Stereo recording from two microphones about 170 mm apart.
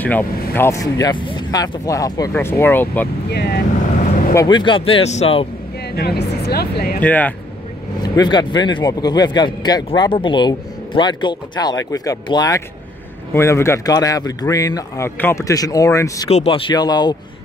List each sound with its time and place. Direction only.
0.0 s a man's voice: 10° left (ahead or behind)
3.3 s speech: 70° left (ahead or behind)
4.0 s vehicle: 55° left (ahead or behind)
4.4 s speech: 25° left (ahead or behind)
5.9 s speech: 70° left (ahead or behind)
7.0 s speech: 10° left (ahead or behind)
8.0 s a man's voice: 25° left (ahead or behind)
16.3 s a man's voice: 35° left (ahead or behind)